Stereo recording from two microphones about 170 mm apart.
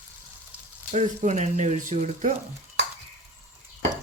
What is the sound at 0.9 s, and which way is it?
Speech, 45° right (ahead or behind).